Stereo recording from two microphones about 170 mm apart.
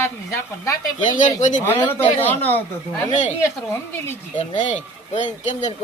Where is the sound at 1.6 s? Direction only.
10° left (ahead or behind).